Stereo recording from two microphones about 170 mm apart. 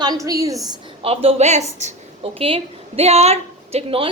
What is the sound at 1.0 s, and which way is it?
A woman's voice, 35° right (ahead or behind).